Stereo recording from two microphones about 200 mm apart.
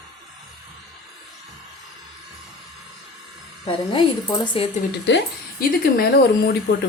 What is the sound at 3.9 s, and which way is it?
Speech, 25° left (ahead or behind).